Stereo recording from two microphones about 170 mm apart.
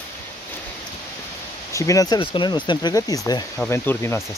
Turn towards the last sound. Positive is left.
turn(degrees=15)  # may be behind; listen again after turning